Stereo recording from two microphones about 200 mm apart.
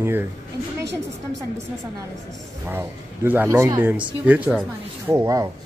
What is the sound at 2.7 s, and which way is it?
Speech, 10° right (ahead or behind).